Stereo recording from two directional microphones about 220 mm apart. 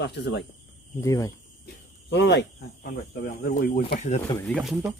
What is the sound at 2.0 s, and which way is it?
Speech, 55° left (ahead or behind).